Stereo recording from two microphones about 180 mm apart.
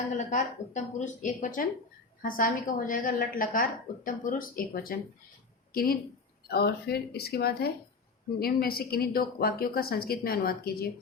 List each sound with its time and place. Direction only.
0.3 s a woman's voice: 45° left (ahead or behind)